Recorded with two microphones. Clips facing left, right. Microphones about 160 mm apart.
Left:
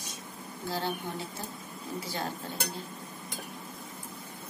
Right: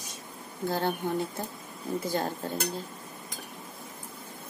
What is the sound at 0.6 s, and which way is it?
Speech, 55° right (ahead or behind).